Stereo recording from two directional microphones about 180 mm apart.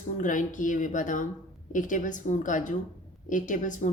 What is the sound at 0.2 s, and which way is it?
A woman's voice, 45° left (ahead or behind).